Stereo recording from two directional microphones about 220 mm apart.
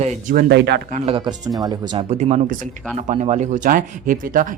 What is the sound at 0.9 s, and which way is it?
Speech, 25° right (ahead or behind).